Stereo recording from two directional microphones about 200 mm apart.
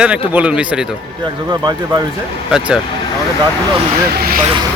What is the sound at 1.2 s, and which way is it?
Speech, 20° right (ahead or behind).